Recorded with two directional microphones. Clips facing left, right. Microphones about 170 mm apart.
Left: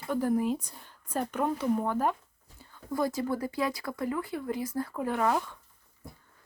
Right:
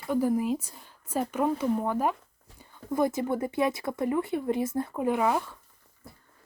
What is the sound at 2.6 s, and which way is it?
Speech, 20° right (ahead or behind).